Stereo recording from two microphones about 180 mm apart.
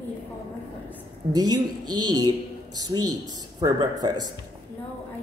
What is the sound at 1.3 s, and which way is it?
Speech, 20° right (ahead or behind).